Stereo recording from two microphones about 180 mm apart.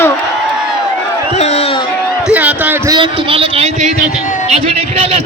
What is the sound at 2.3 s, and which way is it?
Speech, 10° right (ahead or behind).